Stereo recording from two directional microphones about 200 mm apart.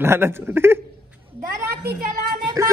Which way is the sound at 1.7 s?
50° right (ahead or behind).